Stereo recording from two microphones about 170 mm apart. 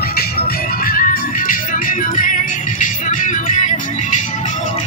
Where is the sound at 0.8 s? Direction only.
55° left (ahead or behind).